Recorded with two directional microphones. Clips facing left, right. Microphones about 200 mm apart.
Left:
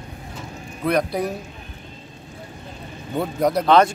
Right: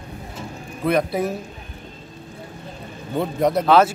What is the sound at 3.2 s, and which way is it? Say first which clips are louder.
Speech: right 1 dB; centre (ahead or behind).